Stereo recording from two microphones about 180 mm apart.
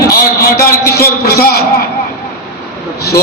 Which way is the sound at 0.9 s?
60° left (ahead or behind).